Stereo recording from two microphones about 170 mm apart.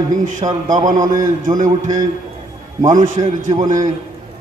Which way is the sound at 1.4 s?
50° right (ahead or behind).